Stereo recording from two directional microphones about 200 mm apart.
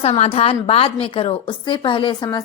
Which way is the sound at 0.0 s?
30° left (ahead or behind).